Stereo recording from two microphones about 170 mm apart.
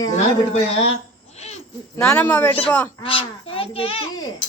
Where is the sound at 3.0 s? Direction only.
30° left (ahead or behind).